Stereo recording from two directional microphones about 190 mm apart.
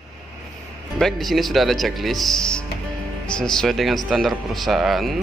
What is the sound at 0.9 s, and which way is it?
Speech, centre (ahead or behind).